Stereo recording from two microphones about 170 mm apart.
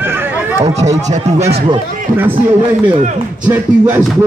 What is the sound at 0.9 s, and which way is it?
Speech, 45° right (ahead or behind).